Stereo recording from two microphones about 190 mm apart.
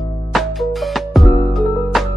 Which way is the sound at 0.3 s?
Centre (ahead or behind).